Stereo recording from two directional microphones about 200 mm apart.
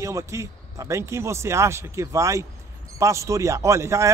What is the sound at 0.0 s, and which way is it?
A man's voice, 15° right (ahead or behind).